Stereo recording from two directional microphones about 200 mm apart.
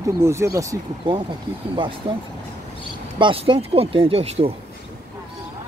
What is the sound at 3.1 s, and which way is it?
Speech, 25° right (ahead or behind).